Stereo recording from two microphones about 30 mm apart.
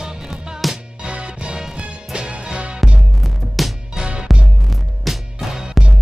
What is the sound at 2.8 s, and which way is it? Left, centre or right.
Music, centre.